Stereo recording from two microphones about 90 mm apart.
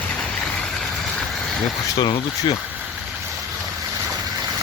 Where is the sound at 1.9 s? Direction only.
60° left (ahead or behind).